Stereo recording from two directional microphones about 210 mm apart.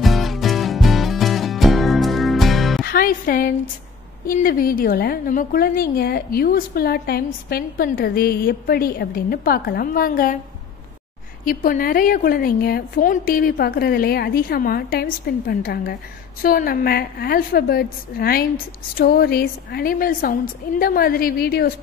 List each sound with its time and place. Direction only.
0.0 s music: centre (ahead or behind)
2.8 s music: 45° left (ahead or behind)
4.3 s a woman's voice: 40° left (ahead or behind)
11.4 s a woman's voice: 40° left (ahead or behind)